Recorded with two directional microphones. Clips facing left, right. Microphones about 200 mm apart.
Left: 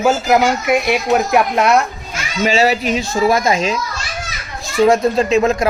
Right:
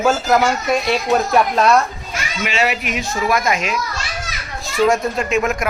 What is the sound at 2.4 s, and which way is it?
Speech, 35° left (ahead or behind).